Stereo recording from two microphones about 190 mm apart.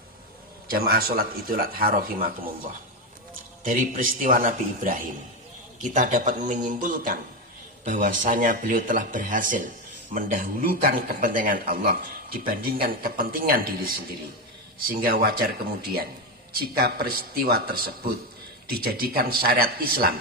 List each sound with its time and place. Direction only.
0.7 s speech: 50° right (ahead or behind)
16.5 s speech: 55° right (ahead or behind)